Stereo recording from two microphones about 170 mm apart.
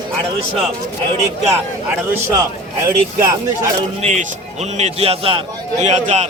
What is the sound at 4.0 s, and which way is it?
A man's voice, 40° right (ahead or behind).